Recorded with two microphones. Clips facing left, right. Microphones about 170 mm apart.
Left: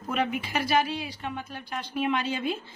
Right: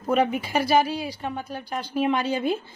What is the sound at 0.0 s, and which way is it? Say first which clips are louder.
A woman's voice: right 6 dB; 40° right (ahead or behind).